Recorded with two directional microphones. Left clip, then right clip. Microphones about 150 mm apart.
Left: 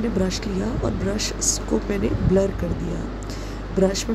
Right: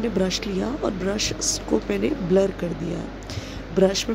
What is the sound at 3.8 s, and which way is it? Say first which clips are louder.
Speech: right 2 dB; 10° right (ahead or behind).